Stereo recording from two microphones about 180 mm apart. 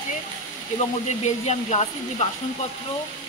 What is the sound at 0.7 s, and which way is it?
Speech, 40° left (ahead or behind).